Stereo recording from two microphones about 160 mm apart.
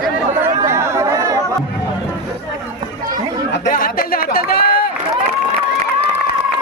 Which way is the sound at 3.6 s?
60° left (ahead or behind).